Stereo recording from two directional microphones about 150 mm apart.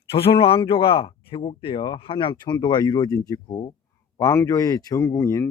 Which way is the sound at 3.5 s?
35° left (ahead or behind).